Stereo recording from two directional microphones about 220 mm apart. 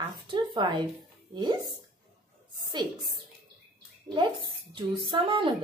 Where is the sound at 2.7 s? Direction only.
20° right (ahead or behind).